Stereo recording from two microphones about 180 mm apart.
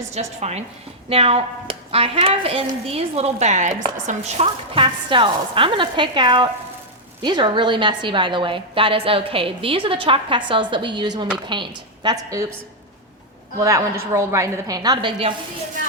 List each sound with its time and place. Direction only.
0.1 s a woman's voice: 35° right (ahead or behind); by 12.5 s 15° right (ahead or behind)
13.6 s a woman's voice: 15° right (ahead or behind)